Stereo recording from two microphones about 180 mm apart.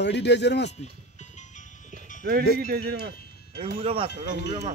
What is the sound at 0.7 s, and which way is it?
Music, 40° left (ahead or behind).